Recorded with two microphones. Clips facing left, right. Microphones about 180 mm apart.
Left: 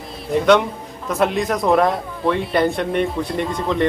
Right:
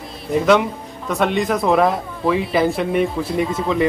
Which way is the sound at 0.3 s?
Centre (ahead or behind).